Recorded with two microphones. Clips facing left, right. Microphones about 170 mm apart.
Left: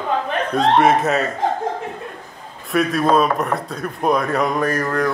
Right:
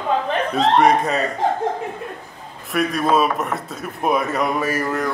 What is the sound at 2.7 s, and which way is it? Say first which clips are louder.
A man's voice: left 2 dB; centre (ahead or behind).